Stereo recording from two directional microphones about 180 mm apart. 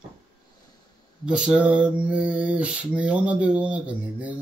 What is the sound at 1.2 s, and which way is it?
Mantra, 5° right (ahead or behind).